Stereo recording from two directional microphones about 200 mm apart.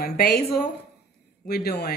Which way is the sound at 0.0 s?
50° left (ahead or behind).